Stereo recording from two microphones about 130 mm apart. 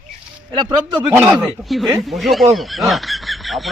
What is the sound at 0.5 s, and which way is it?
Speech, 35° right (ahead or behind).